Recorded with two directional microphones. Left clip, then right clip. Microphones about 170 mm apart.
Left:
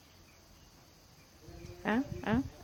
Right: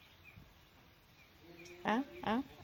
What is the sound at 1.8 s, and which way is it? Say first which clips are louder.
Speech: left 2 dB; 10° left (ahead or behind).